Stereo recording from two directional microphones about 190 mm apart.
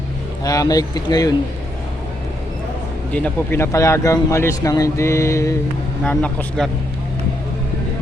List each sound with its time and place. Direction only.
0.4 s speech: 20° left (ahead or behind)
3.1 s speech: 5° left (ahead or behind)